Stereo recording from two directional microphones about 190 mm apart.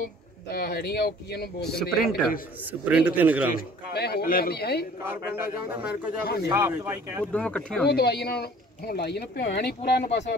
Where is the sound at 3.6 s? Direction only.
55° left (ahead or behind).